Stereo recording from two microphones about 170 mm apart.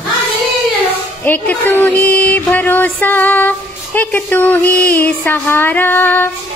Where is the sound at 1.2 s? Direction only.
10° left (ahead or behind).